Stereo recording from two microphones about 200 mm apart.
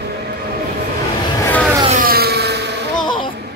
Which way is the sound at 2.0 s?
50° right (ahead or behind).